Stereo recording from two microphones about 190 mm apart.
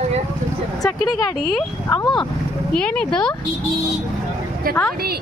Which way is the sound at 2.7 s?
5° left (ahead or behind).